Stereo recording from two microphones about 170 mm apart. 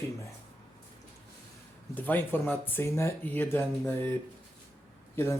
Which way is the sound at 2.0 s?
10° left (ahead or behind).